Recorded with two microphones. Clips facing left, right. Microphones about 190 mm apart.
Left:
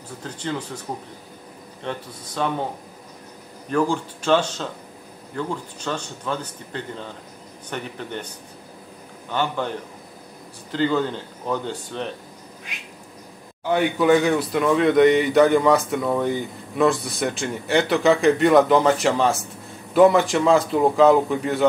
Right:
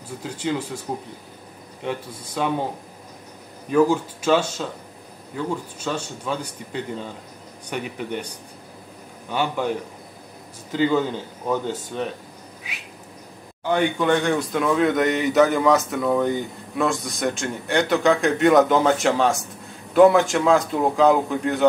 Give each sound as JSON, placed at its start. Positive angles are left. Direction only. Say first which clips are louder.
{"t": 0.2, "sound": "speech", "louder": "right 3 dB", "side_deg": -10}
{"t": 1.8, "sound": "speech", "louder": "right 2 dB", "side_deg": -10}
{"t": 3.7, "sound": "speech", "louder": "right 4 dB", "side_deg": -5}
{"t": 9.3, "sound": "speech", "louder": "even", "side_deg": -10}
{"t": 10.7, "sound": "speech", "louder": "right 1 dB", "side_deg": -10}
{"t": 13.7, "sound": "speech", "louder": "left 2 dB", "side_deg": 5}